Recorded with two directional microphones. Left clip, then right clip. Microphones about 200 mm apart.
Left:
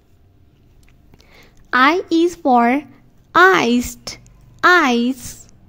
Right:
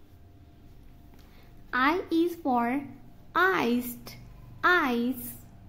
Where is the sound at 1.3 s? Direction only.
45° left (ahead or behind).